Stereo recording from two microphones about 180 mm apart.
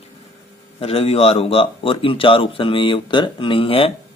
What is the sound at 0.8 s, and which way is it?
Speech, 35° left (ahead or behind).